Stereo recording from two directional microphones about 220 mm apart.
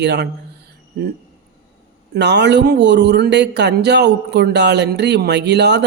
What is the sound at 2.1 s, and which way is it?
Speech, 50° right (ahead or behind).